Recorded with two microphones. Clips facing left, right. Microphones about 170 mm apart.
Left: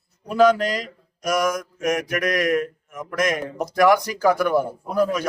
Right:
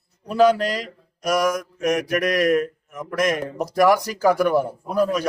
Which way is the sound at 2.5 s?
5° right (ahead or behind).